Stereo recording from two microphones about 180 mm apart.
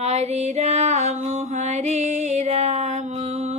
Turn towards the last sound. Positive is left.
turn(degrees=-35)  # may be behind; listen again after turning